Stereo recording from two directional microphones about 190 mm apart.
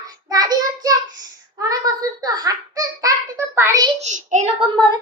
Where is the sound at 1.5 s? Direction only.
20° right (ahead or behind).